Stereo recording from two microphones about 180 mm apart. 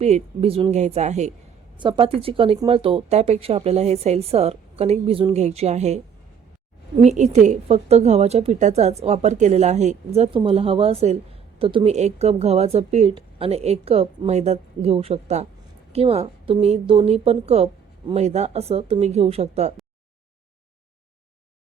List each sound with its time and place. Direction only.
0.0 s a woman's voice: 35° right (ahead or behind)
1.8 s a woman's voice: 30° right (ahead or behind)